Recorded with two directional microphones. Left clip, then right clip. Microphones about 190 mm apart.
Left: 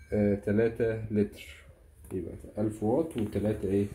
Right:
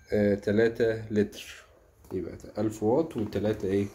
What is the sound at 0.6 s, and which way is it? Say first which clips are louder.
Speech: right 3 dB; centre (ahead or behind).